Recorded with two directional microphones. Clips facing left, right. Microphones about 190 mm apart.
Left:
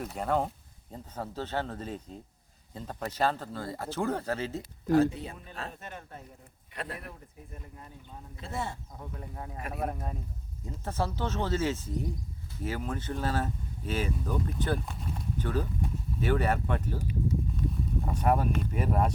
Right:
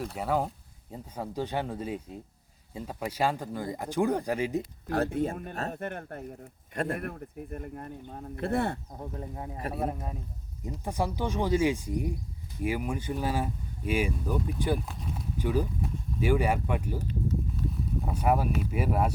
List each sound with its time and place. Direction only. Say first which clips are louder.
0.0 s speech: even; centre (ahead or behind)
4.9 s speech: left 4 dB; 55° right (ahead or behind)
6.7 s speech: right 8 dB; 50° right (ahead or behind)
9.0 s speech: right 4 dB; 30° right (ahead or behind)
9.6 s speech: right 4 dB; 35° right (ahead or behind)
9.8 s speech: left 1 dB; 5° right (ahead or behind)
17.0 s speech: even; 10° left (ahead or behind)
17.6 s speech: even; centre (ahead or behind)